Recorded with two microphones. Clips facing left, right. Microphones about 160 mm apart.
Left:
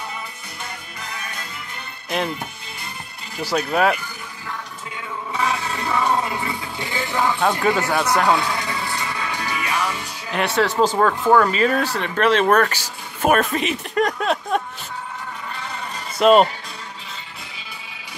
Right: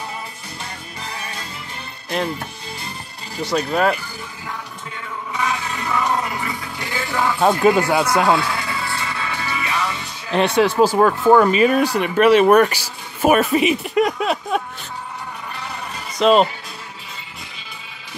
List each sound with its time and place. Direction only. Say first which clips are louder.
2.0 s speech: right 1 dB; 5° left (ahead or behind)
3.4 s speech: right 1 dB; 5° left (ahead or behind)
5.4 s music: even; 30° left (ahead or behind)
7.3 s speech: right 8 dB; 20° right (ahead or behind)
8.4 s music: right 1 dB; 20° left (ahead or behind)
10.4 s speech: right 3 dB; 15° right (ahead or behind)
16.2 s speech: left 1 dB; 5° left (ahead or behind)